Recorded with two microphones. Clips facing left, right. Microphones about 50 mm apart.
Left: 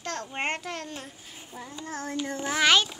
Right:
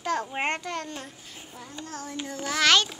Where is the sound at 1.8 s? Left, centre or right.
Left.